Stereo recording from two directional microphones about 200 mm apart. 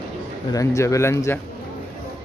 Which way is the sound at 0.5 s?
15° left (ahead or behind).